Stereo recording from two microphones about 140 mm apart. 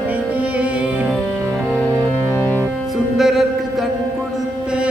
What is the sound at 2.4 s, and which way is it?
Music, 15° left (ahead or behind).